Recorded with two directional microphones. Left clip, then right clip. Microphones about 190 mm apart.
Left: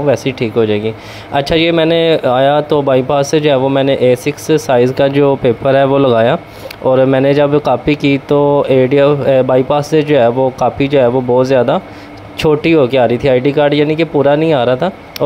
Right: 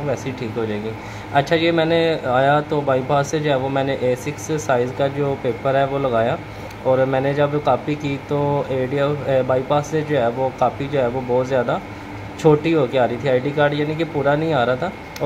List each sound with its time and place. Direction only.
0.1 s a man's voice: 40° left (ahead or behind)